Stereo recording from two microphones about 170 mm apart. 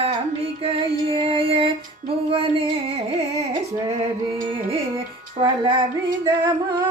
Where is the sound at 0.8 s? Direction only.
35° right (ahead or behind).